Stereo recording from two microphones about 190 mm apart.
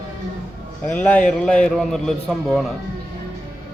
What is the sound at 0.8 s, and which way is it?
A man's voice, 10° left (ahead or behind).